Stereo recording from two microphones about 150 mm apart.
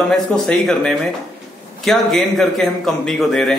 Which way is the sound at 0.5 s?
5° left (ahead or behind).